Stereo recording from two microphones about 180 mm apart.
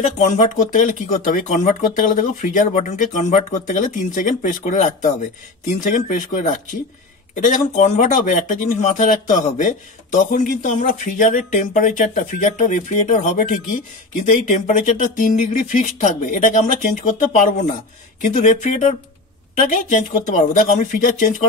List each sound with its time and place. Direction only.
0.0 s speech: 40° left (ahead or behind)